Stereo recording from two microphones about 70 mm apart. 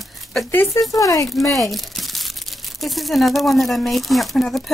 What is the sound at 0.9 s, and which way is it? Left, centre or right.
Speech, left.